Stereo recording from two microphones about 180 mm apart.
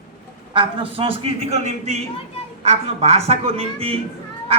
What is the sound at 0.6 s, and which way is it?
A man's voice, 30° right (ahead or behind).